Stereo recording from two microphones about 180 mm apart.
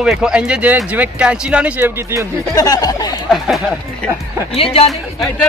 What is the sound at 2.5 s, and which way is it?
Speech, 20° left (ahead or behind).